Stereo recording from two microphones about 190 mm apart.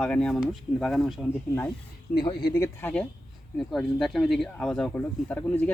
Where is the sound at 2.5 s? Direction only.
15° left (ahead or behind).